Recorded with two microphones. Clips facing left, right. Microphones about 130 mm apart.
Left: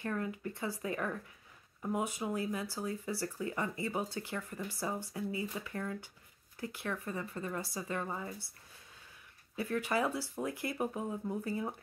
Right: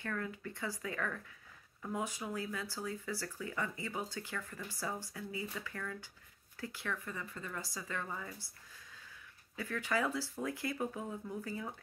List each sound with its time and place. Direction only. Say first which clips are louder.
0.0 s speech: left 4 dB; 25° left (ahead or behind)
9.6 s speech: left 3 dB; 20° left (ahead or behind)